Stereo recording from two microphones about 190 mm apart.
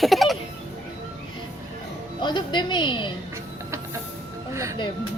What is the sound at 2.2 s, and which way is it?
Speech, 25° left (ahead or behind).